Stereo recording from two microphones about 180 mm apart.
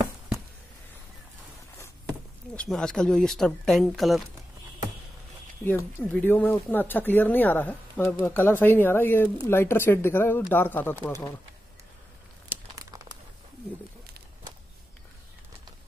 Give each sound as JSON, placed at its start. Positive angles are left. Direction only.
{"t": 2.5, "sound": "speech", "side_deg": 5}
{"t": 5.6, "sound": "speech", "side_deg": 15}
{"t": 12.4, "sound": "crumpling", "side_deg": -15}